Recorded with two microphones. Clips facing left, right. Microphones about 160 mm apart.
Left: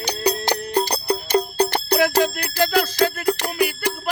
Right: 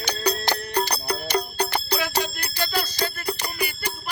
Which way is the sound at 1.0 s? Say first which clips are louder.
Left 5 dB; 25° left (ahead or behind).